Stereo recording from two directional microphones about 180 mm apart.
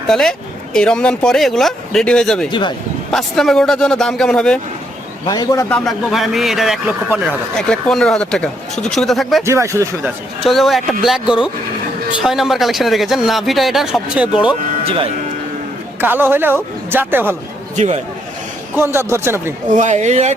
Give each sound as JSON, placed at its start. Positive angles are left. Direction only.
{"t": 0.1, "sound": "speech", "side_deg": 5}
{"t": 2.5, "sound": "a man's voice", "side_deg": 25}
{"t": 3.1, "sound": "speech", "side_deg": 0}
{"t": 5.2, "sound": "speech", "side_deg": 20}
{"t": 9.5, "sound": "speech", "side_deg": -15}
{"t": 10.0, "sound": "speech", "side_deg": 0}
{"t": 14.8, "sound": "speech", "side_deg": -30}
{"t": 16.0, "sound": "speech", "side_deg": -10}
{"t": 17.7, "sound": "speech", "side_deg": -40}
{"t": 18.8, "sound": "speech", "side_deg": -15}
{"t": 19.7, "sound": "speech", "side_deg": -40}